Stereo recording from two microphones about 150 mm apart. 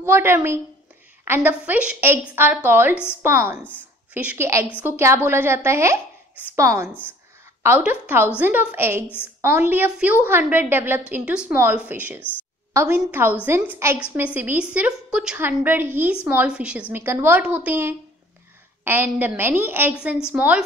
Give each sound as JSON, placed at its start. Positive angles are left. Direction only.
{"t": 0.0, "sound": "a woman's voice", "side_deg": -15}